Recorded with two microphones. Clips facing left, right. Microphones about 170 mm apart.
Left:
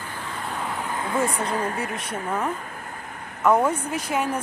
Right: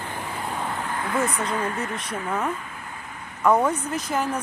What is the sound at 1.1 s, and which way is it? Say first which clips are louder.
Speech: left 1 dB; 25° left (ahead or behind).